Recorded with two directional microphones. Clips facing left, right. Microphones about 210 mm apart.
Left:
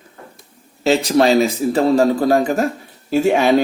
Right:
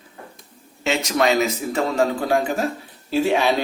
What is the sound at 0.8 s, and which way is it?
A man's voice, 35° left (ahead or behind).